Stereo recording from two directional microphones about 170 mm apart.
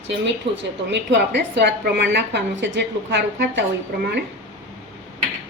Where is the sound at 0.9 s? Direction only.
90° right.